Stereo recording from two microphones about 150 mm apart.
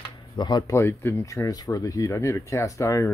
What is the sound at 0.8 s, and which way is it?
Speech, 15° left (ahead or behind).